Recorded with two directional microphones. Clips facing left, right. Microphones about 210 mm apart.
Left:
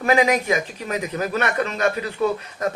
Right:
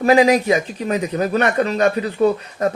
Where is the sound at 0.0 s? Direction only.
35° right (ahead or behind).